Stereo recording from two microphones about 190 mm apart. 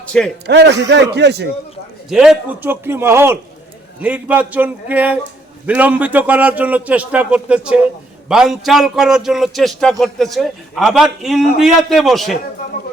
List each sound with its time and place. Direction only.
0.0 s a sound: 5° left (ahead or behind)
0.4 s a man's voice: 65° right (ahead or behind)
2.0 s a man's voice: 5° right (ahead or behind)